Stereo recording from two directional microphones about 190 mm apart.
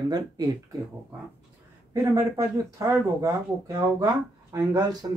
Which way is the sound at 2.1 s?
15° right (ahead or behind).